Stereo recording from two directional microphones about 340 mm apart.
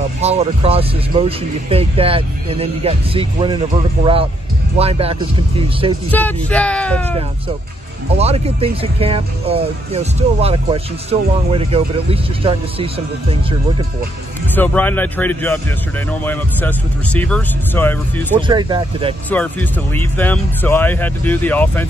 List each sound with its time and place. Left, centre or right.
0.2 s speech: centre
6.1 s speech: centre
8.2 s speech: centre
14.5 s speech: centre
18.5 s speech: centre
19.3 s speech: centre